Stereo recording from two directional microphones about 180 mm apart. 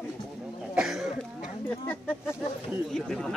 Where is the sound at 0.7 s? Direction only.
5° right (ahead or behind).